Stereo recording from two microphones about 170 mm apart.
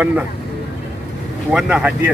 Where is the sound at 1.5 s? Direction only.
5° right (ahead or behind).